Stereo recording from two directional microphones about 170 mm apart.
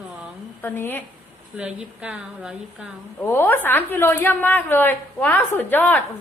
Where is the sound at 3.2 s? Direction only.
10° left (ahead or behind).